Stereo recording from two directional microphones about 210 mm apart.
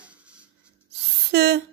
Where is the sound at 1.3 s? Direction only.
50° right (ahead or behind).